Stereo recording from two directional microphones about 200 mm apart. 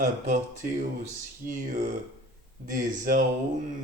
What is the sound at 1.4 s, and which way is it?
Speech, 45° right (ahead or behind).